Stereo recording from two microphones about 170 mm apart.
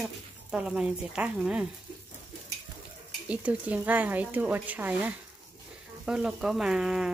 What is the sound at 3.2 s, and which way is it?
Speech, 10° right (ahead or behind).